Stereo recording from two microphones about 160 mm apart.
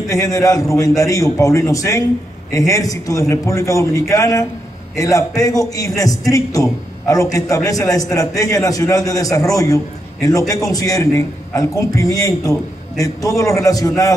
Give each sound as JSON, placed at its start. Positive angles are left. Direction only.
{"t": 0.1, "sound": "a man's voice", "side_deg": 20}